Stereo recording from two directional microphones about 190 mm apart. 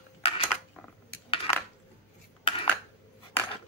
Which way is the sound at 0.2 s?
30° left (ahead or behind).